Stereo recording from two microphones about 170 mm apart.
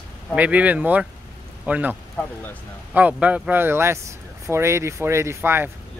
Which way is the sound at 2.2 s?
10° left (ahead or behind).